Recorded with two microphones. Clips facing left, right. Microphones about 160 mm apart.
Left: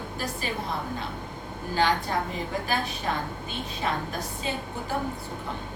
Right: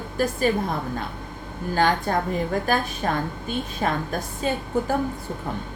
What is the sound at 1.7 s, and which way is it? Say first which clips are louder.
A woman's voice: right 4 dB; 50° right (ahead or behind).